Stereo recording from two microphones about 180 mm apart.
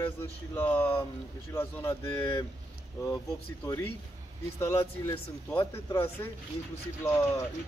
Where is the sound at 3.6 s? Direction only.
15° left (ahead or behind).